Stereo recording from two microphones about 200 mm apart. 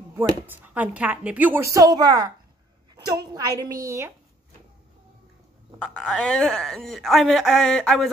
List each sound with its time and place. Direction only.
0.1 s a woman's voice: 10° right (ahead or behind)
5.8 s speech: 5° left (ahead or behind)